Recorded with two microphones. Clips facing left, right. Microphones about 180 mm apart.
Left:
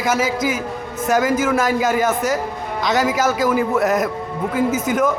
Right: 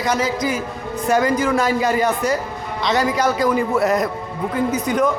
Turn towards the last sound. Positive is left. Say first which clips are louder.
# even
turn(degrees=5)  # may be behind; listen again after turning